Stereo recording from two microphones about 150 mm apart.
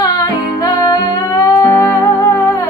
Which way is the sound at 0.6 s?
25° left (ahead or behind).